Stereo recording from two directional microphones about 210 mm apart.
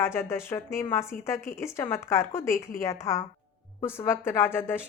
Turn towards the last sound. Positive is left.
turn(degrees=10)  # may be behind; listen again after turning